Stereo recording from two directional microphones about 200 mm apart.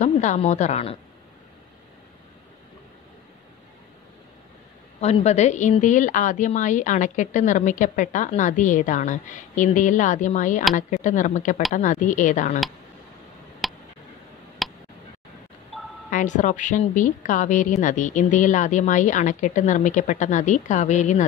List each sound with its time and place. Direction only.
0.0 s a woman's voice: 35° left (ahead or behind)
5.0 s a woman's voice: 35° left (ahead or behind)
13.6 s tick: centre (ahead or behind)
16.1 s a woman's voice: 40° left (ahead or behind)